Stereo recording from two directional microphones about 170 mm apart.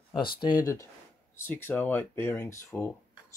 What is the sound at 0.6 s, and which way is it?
Speech, 20° left (ahead or behind).